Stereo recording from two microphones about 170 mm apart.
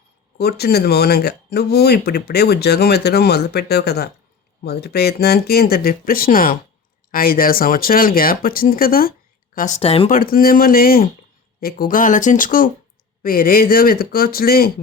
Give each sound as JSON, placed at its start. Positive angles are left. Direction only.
{"t": 0.3, "sound": "speech", "side_deg": 70}
{"t": 9.8, "sound": "speech", "side_deg": 35}
{"t": 10.1, "sound": "speech", "side_deg": 55}